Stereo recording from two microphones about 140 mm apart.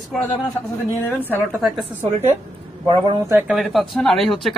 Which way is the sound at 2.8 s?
35° right (ahead or behind).